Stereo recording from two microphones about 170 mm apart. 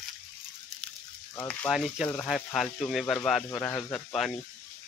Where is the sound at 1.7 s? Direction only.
5° right (ahead or behind).